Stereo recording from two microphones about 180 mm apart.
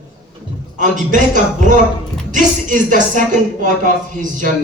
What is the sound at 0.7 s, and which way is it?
Speech, 45° right (ahead or behind).